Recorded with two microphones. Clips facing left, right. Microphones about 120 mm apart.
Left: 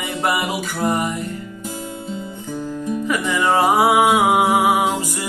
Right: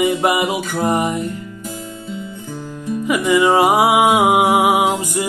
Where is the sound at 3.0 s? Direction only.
15° right (ahead or behind).